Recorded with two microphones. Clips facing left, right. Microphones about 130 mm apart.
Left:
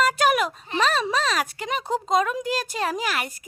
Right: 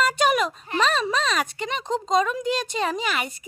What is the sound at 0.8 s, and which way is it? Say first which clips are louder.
Speech: even; 5° left (ahead or behind).